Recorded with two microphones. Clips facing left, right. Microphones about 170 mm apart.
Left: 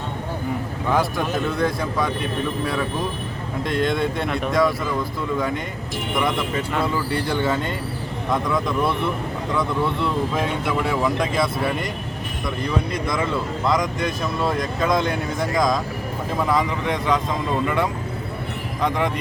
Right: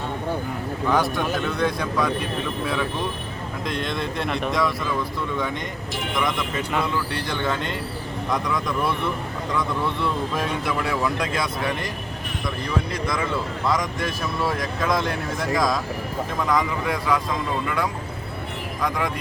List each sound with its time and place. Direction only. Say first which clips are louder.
0.9 s speech: even; 5° left (ahead or behind)
3.7 s speech: left 6 dB; centre (ahead or behind)
6.7 s speech: left 2 dB; 10° left (ahead or behind)
12.9 s speech: left 2 dB; centre (ahead or behind)
16.8 s speech: left 2 dB; 5° right (ahead or behind)